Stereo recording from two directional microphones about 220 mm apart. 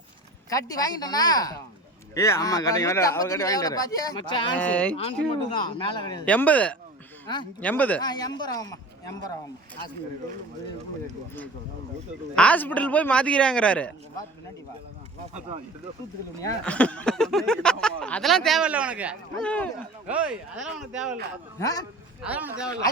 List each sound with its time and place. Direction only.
0.5 s speech: 15° left (ahead or behind)
4.5 s speech: 5° left (ahead or behind)
4.9 s a man's voice: 25° left (ahead or behind)
6.2 s speech: 5° left (ahead or behind)
8.0 s speech: 20° left (ahead or behind)
12.4 s speech: 5° left (ahead or behind)
16.6 s speech: 5° left (ahead or behind)
19.5 s speech: 5° left (ahead or behind)
20.1 s speech: 5° right (ahead or behind)
21.6 s speech: 15° left (ahead or behind)
22.2 s speech: 5° right (ahead or behind)